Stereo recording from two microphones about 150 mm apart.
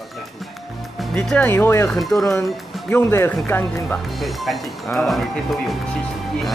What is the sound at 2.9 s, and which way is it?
Speech, 15° left (ahead or behind).